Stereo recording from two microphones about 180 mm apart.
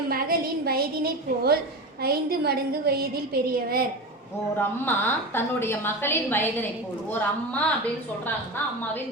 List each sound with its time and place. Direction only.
0.1 s a woman's voice: 55° right (ahead or behind)
4.5 s a woman's voice: 10° left (ahead or behind)